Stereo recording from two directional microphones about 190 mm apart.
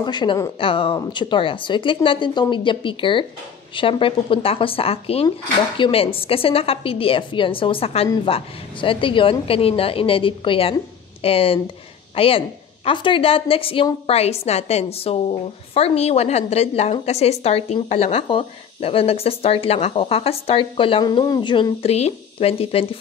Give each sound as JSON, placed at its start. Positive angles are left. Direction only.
{"t": 0.0, "sound": "a woman's voice", "side_deg": 25}